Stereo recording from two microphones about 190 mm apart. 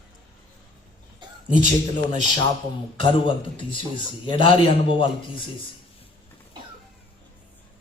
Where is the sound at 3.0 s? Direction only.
25° left (ahead or behind).